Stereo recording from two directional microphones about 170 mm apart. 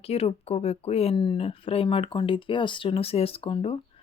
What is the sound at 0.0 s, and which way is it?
Speech, 35° left (ahead or behind).